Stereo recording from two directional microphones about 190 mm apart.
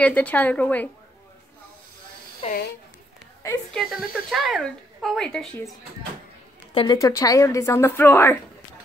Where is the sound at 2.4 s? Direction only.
35° left (ahead or behind).